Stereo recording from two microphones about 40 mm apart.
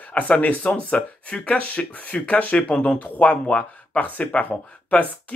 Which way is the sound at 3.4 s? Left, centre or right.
Left.